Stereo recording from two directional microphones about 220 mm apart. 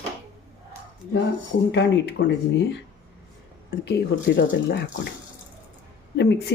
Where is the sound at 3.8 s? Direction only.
50° left (ahead or behind).